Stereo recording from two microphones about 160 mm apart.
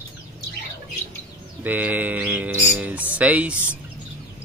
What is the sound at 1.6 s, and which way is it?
Speech, 10° right (ahead or behind).